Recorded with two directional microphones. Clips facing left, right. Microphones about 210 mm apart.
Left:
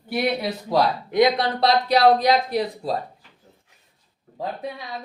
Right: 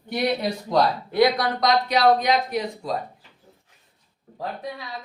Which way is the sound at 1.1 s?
20° left (ahead or behind).